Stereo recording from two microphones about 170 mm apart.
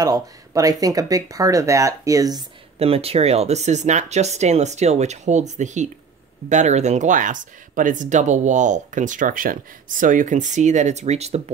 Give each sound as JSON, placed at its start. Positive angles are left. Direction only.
{"t": 0.0, "sound": "speech", "side_deg": -20}
{"t": 2.8, "sound": "speech", "side_deg": -35}